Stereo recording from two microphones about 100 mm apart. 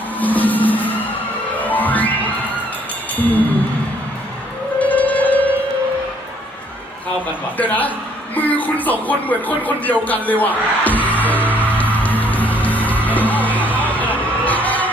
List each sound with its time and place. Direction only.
0.2 s music: 15° left (ahead or behind)
3.2 s speech: 15° left (ahead or behind)
4.8 s music: 15° left (ahead or behind)
7.6 s speech: 15° left (ahead or behind)
10.2 s music: 15° left (ahead or behind)